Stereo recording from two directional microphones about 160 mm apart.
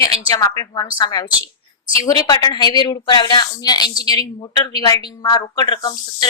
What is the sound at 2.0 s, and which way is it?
Speech, 25° left (ahead or behind).